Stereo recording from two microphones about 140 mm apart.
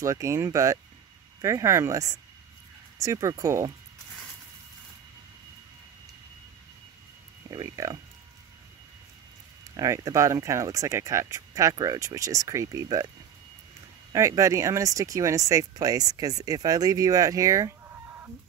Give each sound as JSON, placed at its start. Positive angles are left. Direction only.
{"t": 0.0, "sound": "speech", "side_deg": -20}
{"t": 7.5, "sound": "speech", "side_deg": -25}
{"t": 9.8, "sound": "speech", "side_deg": -25}
{"t": 14.1, "sound": "speech", "side_deg": -20}